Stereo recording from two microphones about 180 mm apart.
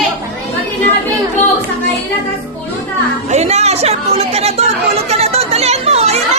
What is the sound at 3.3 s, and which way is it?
Chatter, 35° right (ahead or behind).